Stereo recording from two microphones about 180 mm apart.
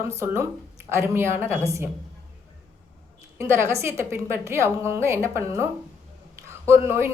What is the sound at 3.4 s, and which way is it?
A woman's voice, 15° right (ahead or behind).